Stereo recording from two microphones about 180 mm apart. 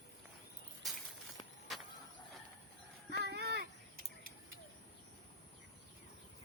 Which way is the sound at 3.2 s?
65° right (ahead or behind).